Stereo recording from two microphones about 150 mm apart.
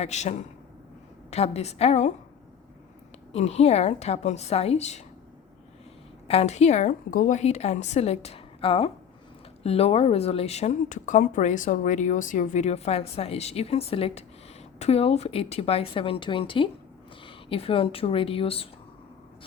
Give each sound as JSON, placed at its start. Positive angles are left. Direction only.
{"t": 0.0, "sound": "speech", "side_deg": 50}
{"t": 3.3, "sound": "speech", "side_deg": 45}
{"t": 6.2, "sound": "a woman's voice", "side_deg": 45}